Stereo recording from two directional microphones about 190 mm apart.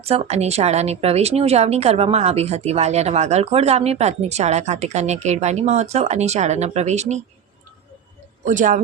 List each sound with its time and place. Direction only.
0.0 s speech: 30° right (ahead or behind)
8.4 s speech: 45° right (ahead or behind)